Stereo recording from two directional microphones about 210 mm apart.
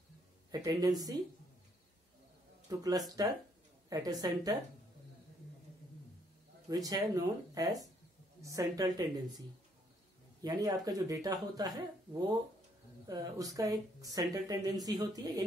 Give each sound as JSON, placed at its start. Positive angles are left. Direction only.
{"t": 0.5, "sound": "speech", "side_deg": -20}
{"t": 2.7, "sound": "speech", "side_deg": -15}
{"t": 6.7, "sound": "speech", "side_deg": -15}
{"t": 10.4, "sound": "speech", "side_deg": -15}